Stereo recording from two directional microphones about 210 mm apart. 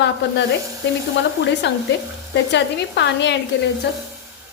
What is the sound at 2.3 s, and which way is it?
Speech, 55° left (ahead or behind).